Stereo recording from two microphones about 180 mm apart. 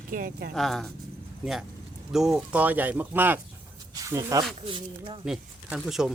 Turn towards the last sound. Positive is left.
turn(degrees=-5)  # may be behind; listen again after turning